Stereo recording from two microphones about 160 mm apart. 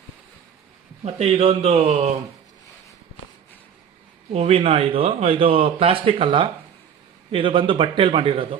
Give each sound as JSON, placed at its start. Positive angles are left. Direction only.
{"t": 1.0, "sound": "a man's voice", "side_deg": -40}
{"t": 4.3, "sound": "a man's voice", "side_deg": -40}